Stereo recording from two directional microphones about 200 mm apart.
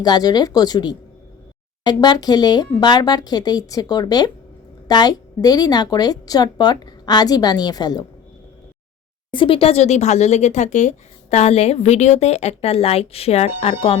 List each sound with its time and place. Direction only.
0.0 s a woman's voice: 20° left (ahead or behind)
9.3 s speech: 25° left (ahead or behind)